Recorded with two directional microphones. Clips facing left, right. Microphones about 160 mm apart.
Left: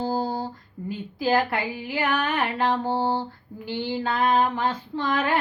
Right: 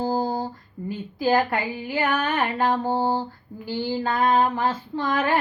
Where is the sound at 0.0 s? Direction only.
45° right (ahead or behind).